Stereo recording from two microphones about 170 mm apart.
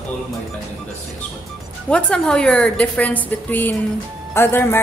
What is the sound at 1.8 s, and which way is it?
A woman's voice, 5° left (ahead or behind).